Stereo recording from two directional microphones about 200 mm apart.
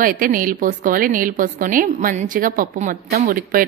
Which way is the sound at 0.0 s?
45° right (ahead or behind).